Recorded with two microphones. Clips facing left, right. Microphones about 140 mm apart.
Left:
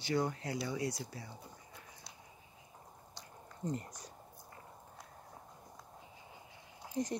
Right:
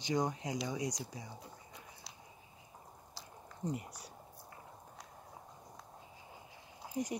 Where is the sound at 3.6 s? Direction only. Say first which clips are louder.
Even; 10° right (ahead or behind).